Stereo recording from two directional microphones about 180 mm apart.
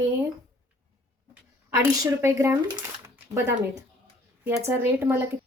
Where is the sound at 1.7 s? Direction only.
15° right (ahead or behind).